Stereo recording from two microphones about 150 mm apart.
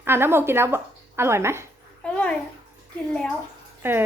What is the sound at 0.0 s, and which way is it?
A woman's voice, 15° right (ahead or behind).